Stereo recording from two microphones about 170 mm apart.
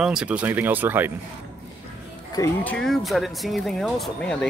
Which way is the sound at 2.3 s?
20° left (ahead or behind).